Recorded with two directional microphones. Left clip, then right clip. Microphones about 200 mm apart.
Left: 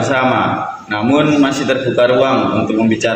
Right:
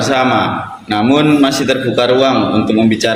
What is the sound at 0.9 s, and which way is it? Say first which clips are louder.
A man's voice: right 3 dB; 50° right (ahead or behind).